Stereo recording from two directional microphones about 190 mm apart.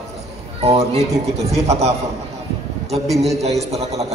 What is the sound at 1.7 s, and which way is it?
Speech, 35° right (ahead or behind).